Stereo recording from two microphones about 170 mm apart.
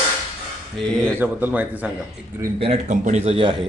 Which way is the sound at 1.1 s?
10° right (ahead or behind).